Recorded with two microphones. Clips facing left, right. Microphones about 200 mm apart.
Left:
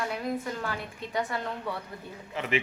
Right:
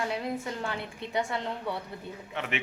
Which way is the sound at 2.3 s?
Centre (ahead or behind).